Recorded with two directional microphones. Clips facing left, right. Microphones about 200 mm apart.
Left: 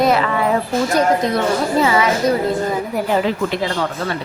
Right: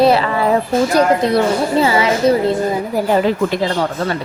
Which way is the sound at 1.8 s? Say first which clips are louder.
Even; 30° right (ahead or behind).